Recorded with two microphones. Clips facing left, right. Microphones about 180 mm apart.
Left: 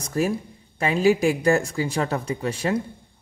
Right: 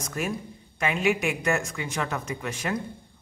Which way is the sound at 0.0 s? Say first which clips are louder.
Left 7 dB; 35° left (ahead or behind).